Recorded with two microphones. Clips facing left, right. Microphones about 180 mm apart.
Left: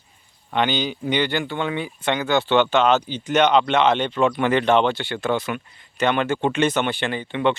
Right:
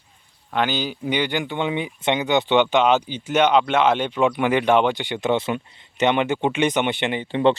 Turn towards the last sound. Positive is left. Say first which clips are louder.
# right 3 dB
turn(degrees=-30)  # may be behind; listen again after turning